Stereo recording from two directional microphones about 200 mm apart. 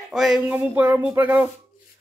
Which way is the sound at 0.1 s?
Centre (ahead or behind).